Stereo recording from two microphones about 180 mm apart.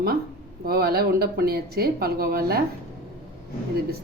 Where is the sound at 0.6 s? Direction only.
55° right (ahead or behind).